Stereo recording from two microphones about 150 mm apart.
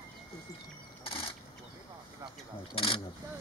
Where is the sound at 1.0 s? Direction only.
35° left (ahead or behind).